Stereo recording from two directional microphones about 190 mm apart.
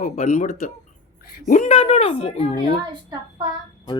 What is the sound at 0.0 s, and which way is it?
A woman's voice, 45° left (ahead or behind).